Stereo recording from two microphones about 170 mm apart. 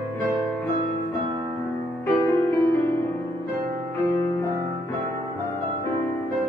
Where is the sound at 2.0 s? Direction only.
15° left (ahead or behind).